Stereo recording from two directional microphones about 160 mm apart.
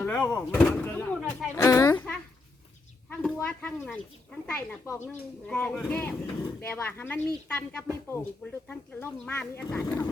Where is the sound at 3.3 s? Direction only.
10° left (ahead or behind).